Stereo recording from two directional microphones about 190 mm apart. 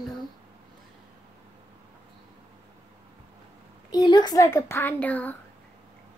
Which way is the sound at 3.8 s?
20° left (ahead or behind).